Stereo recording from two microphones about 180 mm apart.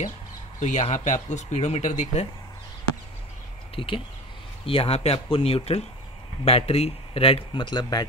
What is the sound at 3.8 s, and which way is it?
A man's voice, 30° left (ahead or behind).